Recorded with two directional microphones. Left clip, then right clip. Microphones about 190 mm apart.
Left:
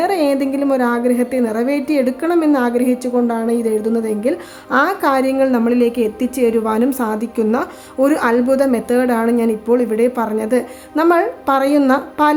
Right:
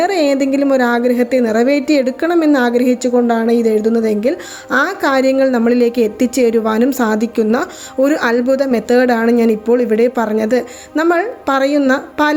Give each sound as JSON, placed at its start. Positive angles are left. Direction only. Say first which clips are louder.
{"t": 0.0, "sound": "a woman's voice", "louder": "right 2 dB", "side_deg": -15}